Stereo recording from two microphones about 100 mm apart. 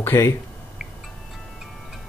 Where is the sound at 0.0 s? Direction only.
25° left (ahead or behind).